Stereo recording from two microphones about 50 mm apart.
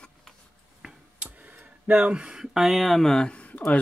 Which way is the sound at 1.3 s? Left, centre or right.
Right.